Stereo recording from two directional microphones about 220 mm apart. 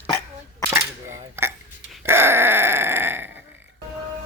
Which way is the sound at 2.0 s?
10° right (ahead or behind).